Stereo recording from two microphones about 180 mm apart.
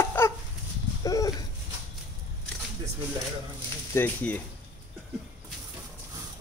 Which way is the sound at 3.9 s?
10° left (ahead or behind).